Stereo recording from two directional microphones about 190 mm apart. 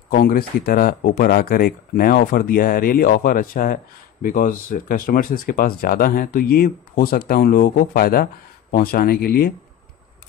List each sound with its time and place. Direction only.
0.1 s speech: 50° left (ahead or behind)